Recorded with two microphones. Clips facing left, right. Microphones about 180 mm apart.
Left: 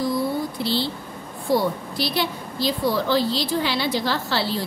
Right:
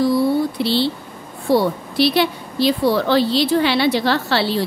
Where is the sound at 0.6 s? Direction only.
75° right (ahead or behind).